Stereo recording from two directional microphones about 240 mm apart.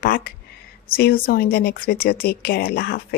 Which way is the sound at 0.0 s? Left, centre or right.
Left.